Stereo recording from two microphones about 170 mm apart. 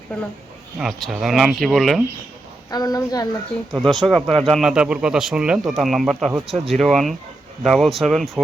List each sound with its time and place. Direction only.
0.8 s speech: centre (ahead or behind)
2.6 s a woman's voice: 20° left (ahead or behind)
3.7 s speech: centre (ahead or behind)